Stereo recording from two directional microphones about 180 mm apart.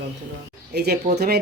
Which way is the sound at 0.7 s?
65° right (ahead or behind).